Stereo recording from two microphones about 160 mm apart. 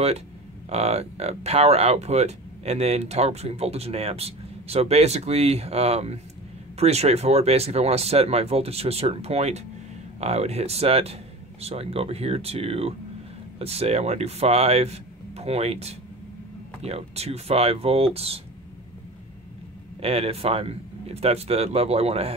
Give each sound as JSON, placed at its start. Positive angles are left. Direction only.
{"t": 0.7, "sound": "speech", "side_deg": -40}
{"t": 20.0, "sound": "speech", "side_deg": -35}